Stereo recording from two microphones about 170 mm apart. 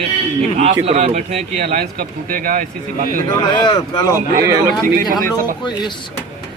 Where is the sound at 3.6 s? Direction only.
25° left (ahead or behind).